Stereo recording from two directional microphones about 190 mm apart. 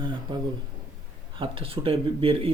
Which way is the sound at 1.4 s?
30° right (ahead or behind).